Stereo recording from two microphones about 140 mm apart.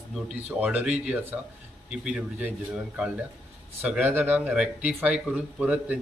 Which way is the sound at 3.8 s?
10° right (ahead or behind).